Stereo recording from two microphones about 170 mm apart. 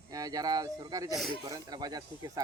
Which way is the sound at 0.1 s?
20° right (ahead or behind).